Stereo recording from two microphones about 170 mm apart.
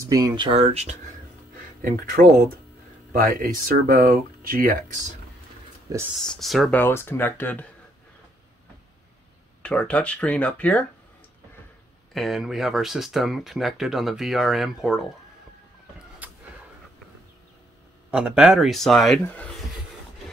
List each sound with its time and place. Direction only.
0.0 s speech: 25° right (ahead or behind)
1.8 s speech: 55° right (ahead or behind)
5.9 s speech: 20° right (ahead or behind)
6.2 s speech: centre (ahead or behind)
9.6 s speech: 5° left (ahead or behind)
12.1 s speech: centre (ahead or behind)
16.2 s a sound: 10° right (ahead or behind)
18.1 s speech: 5° right (ahead or behind)